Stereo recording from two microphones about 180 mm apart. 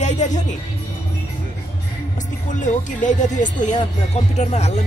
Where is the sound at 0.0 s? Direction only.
40° left (ahead or behind).